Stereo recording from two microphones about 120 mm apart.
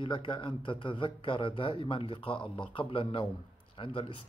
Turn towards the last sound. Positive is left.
turn(degrees=45)  # may be behind; listen again after turning